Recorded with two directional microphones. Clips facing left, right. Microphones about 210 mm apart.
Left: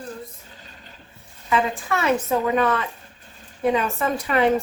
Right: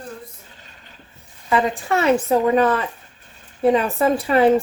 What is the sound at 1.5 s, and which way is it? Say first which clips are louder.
A woman's voice: right 3 dB; 30° right (ahead or behind).